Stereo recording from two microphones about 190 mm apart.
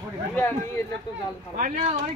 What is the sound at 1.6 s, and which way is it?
Speech, 40° right (ahead or behind).